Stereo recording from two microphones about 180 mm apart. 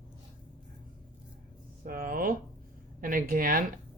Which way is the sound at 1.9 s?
50° right (ahead or behind).